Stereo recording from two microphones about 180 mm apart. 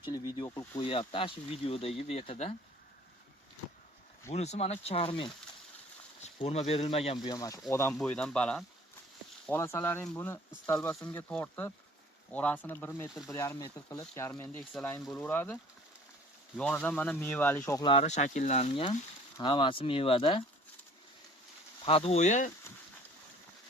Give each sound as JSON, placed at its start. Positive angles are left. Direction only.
{"t": 0.0, "sound": "speech", "side_deg": 25}
{"t": 4.3, "sound": "speech", "side_deg": 40}
{"t": 16.6, "sound": "speech", "side_deg": 5}
{"t": 17.8, "sound": "speech", "side_deg": 35}
{"t": 21.8, "sound": "speech", "side_deg": 35}